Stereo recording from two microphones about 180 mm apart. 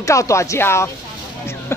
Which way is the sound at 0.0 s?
15° left (ahead or behind).